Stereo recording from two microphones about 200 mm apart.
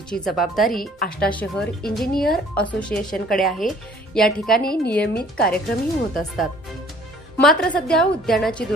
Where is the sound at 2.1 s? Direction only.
50° left (ahead or behind).